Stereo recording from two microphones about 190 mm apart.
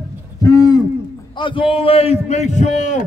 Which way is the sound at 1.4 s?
25° left (ahead or behind).